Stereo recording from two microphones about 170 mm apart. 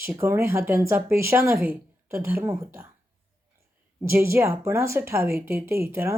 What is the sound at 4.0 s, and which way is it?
Speech, 15° right (ahead or behind).